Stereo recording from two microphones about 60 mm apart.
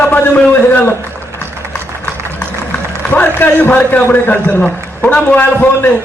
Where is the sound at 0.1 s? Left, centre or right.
Left.